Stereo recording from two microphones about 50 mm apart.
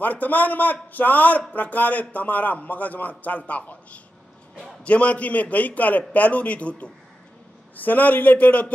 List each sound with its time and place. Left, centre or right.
0.0 s a man's voice: left